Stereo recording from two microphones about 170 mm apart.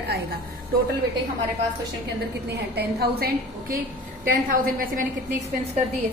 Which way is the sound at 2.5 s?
70° right (ahead or behind).